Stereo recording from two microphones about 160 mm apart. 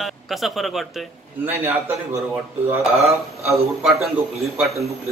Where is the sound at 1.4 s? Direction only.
10° right (ahead or behind).